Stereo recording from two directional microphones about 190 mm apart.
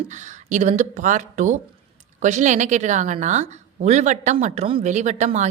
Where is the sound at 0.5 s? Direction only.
40° right (ahead or behind).